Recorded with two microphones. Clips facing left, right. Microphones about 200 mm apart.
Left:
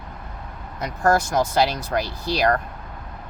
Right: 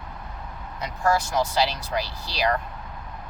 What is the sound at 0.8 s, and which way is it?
Speech, 50° left (ahead or behind).